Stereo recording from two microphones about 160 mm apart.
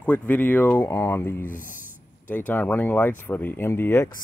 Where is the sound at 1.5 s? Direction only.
55° left (ahead or behind).